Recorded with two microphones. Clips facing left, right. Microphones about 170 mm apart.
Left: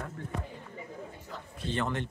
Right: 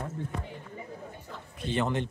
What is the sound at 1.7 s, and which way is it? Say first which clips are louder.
Speech: right 4 dB; 20° right (ahead or behind).